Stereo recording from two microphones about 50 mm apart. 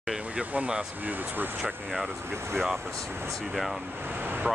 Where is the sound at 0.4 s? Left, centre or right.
Right.